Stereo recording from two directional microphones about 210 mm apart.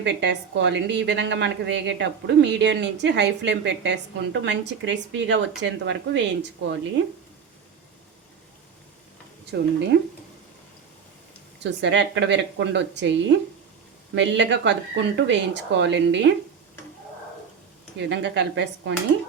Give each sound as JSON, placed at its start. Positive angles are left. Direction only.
{"t": 0.0, "sound": "a woman's voice", "side_deg": -55}
{"t": 9.5, "sound": "speech", "side_deg": -55}
{"t": 11.6, "sound": "a woman's voice", "side_deg": -55}
{"t": 18.1, "sound": "a woman's voice", "side_deg": -55}